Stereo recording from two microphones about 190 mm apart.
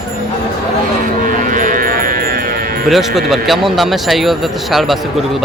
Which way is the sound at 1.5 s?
45° right (ahead or behind).